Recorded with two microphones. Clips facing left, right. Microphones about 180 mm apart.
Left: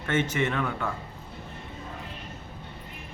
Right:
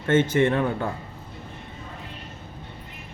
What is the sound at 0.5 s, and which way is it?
Speech, 30° right (ahead or behind).